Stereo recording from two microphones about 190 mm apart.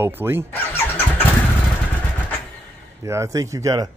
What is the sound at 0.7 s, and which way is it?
Vehicle, 10° left (ahead or behind).